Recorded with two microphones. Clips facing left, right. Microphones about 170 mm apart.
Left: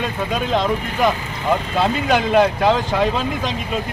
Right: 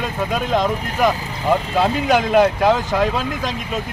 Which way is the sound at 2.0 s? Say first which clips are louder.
Right 1 dB; 5° right (ahead or behind).